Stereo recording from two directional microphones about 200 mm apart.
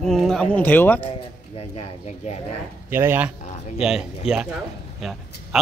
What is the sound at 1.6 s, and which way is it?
Speech, 30° left (ahead or behind).